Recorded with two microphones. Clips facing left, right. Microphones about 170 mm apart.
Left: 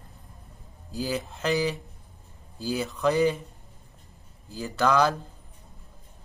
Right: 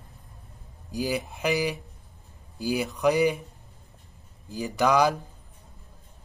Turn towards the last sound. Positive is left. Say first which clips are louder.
# right 1 dB
turn(degrees=-15)  # may be behind; listen again after turning